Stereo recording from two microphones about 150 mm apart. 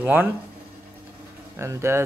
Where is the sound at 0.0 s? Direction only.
15° right (ahead or behind).